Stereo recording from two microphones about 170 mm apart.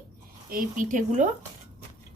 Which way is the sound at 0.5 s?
50° right (ahead or behind).